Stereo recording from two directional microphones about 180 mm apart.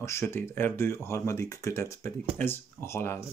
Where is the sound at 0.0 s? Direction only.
15° left (ahead or behind).